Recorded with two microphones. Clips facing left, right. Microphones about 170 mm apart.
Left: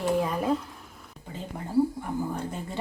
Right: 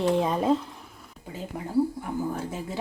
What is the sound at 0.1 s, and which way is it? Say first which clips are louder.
Speech: left 1 dB; 25° right (ahead or behind).